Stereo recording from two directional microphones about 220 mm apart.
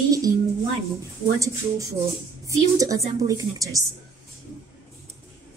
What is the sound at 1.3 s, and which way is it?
A woman's voice, 15° right (ahead or behind).